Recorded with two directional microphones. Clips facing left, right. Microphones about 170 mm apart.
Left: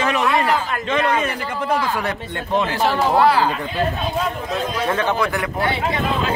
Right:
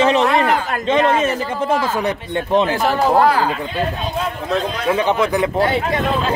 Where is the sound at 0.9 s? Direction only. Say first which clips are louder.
Right 5 dB; 25° right (ahead or behind).